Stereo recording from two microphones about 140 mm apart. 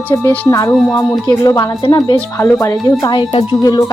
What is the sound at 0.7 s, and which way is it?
Speech, 5° left (ahead or behind).